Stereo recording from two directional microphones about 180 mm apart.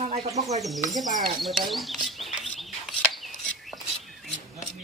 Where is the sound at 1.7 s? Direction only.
Centre (ahead or behind).